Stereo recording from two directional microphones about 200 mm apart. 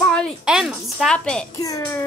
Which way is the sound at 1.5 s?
15° left (ahead or behind).